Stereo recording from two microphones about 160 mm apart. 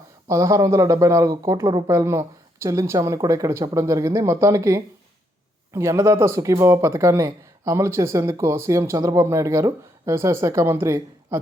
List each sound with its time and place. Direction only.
0.3 s speech: 20° right (ahead or behind)